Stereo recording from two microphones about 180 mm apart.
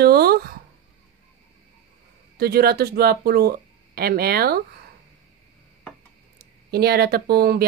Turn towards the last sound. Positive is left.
turn(degrees=-55)  # may be behind; listen again after turning